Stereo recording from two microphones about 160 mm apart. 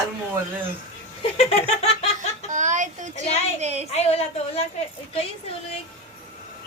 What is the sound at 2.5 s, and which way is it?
A child's voice, 50° right (ahead or behind).